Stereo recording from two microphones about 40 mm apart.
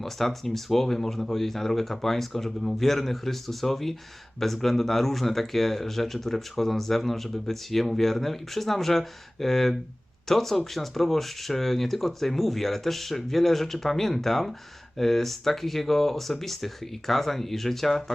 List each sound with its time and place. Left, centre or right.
0.0 s speech: centre